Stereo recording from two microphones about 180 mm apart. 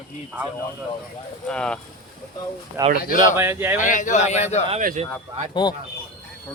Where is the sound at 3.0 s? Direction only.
50° left (ahead or behind).